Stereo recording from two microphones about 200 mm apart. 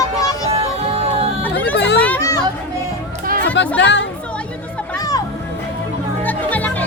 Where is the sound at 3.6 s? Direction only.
65° left (ahead or behind).